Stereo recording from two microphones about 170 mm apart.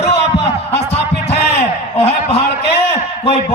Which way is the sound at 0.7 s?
40° left (ahead or behind).